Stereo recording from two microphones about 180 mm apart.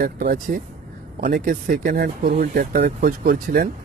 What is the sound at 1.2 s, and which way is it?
Speech, 45° right (ahead or behind).